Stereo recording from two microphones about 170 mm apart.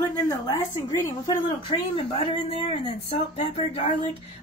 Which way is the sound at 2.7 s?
40° left (ahead or behind).